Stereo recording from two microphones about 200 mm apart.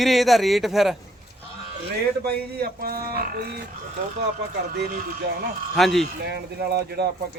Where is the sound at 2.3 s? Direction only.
55° right (ahead or behind).